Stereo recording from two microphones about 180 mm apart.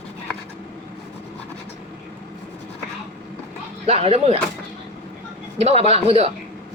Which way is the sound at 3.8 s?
35° right (ahead or behind).